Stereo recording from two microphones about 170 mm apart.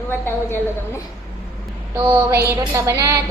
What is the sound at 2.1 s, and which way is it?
Music, 15° right (ahead or behind).